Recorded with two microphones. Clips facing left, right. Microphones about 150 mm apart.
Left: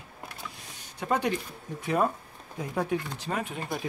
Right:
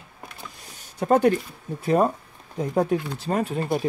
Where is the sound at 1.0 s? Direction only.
50° right (ahead or behind).